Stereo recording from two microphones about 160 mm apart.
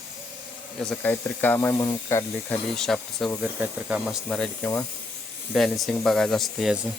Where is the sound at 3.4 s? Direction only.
10° right (ahead or behind).